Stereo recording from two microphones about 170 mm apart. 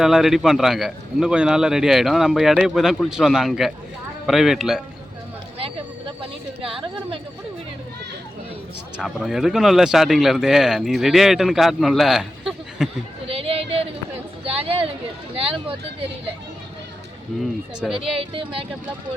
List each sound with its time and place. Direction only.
0.0 s speech: 5° right (ahead or behind)
5.5 s a sound: 35° right (ahead or behind)
6.6 s a woman's voice: 30° right (ahead or behind)
9.0 s speech: centre (ahead or behind)
13.2 s a sound: 35° right (ahead or behind)
17.4 s speech: centre (ahead or behind)